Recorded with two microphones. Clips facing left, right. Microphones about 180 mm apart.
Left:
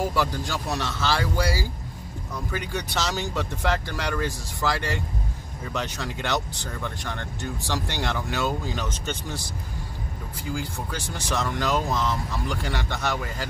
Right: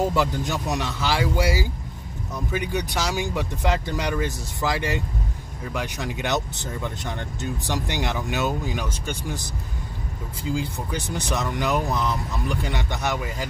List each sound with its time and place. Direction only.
0.0 s speech: 20° right (ahead or behind)